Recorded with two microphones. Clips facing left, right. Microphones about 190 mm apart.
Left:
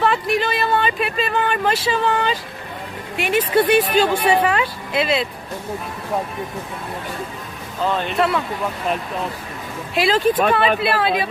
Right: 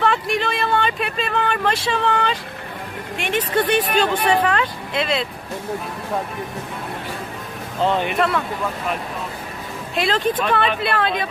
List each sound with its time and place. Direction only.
0.0 s a sound: 5° left (ahead or behind)
3.2 s speech: 5° left (ahead or behind)
7.9 s speech: 15° right (ahead or behind)
9.9 s speech: 5° left (ahead or behind)